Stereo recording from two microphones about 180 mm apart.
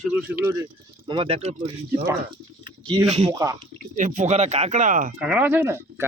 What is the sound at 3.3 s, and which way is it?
Speech, 20° right (ahead or behind).